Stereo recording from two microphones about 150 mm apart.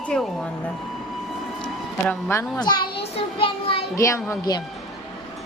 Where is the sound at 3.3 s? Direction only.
35° left (ahead or behind).